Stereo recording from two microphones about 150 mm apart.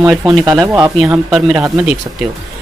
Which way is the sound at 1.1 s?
Centre (ahead or behind).